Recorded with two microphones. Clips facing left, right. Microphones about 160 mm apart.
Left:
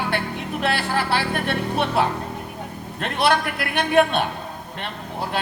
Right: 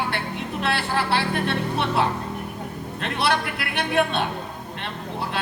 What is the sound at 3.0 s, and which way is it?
A man's voice, 45° left (ahead or behind).